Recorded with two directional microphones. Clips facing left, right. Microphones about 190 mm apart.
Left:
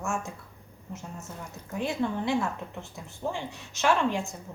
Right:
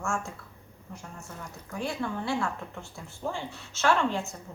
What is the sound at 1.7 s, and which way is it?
Speech, 20° left (ahead or behind).